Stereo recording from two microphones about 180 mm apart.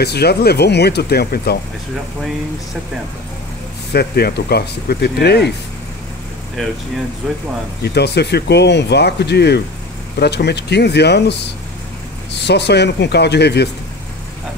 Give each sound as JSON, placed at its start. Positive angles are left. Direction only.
{"t": 0.0, "sound": "speech", "side_deg": 65}
{"t": 3.9, "sound": "speech", "side_deg": 60}
{"t": 7.8, "sound": "speech", "side_deg": 65}